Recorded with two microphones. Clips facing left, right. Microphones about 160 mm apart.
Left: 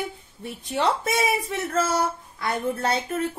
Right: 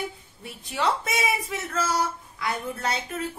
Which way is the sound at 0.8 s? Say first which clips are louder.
Left 3 dB; 35° left (ahead or behind).